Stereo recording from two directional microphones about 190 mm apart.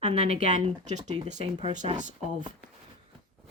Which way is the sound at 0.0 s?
35° right (ahead or behind).